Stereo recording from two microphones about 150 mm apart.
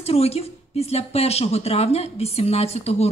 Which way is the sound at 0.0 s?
45° left (ahead or behind).